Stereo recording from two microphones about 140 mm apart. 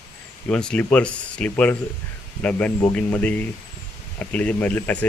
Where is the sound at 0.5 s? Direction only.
5° left (ahead or behind).